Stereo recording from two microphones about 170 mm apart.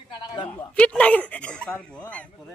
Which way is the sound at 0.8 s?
10° left (ahead or behind).